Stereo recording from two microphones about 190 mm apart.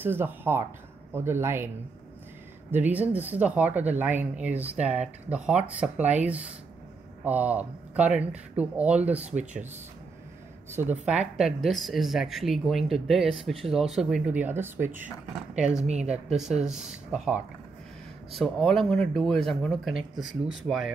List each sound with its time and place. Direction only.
0.0 s speech: 10° right (ahead or behind)
2.7 s speech: 10° right (ahead or behind)
9.4 s speech: 40° right (ahead or behind)
10.7 s speech: 10° right (ahead or behind)
17.1 s speech: 5° right (ahead or behind)